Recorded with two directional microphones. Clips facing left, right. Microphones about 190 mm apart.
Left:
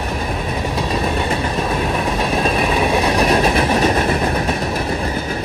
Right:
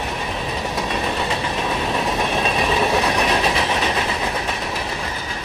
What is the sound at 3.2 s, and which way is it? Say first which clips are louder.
Train: left 5 dB; 45° left (ahead or behind).